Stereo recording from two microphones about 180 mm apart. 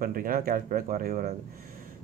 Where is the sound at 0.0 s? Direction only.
50° right (ahead or behind).